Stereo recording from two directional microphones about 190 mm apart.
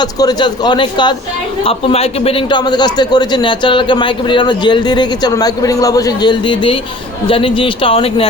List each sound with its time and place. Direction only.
0.0 s a man's voice: 20° left (ahead or behind)